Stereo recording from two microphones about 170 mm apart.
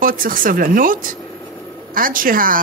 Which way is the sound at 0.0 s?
55° right (ahead or behind).